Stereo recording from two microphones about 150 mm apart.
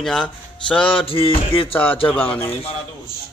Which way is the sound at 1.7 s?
10° left (ahead or behind).